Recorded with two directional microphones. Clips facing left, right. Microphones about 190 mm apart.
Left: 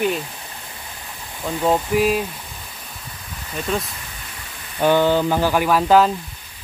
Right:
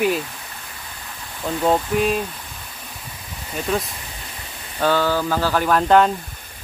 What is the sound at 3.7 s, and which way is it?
Speech, centre (ahead or behind).